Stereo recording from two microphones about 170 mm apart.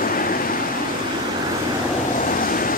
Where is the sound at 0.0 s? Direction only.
55° left (ahead or behind).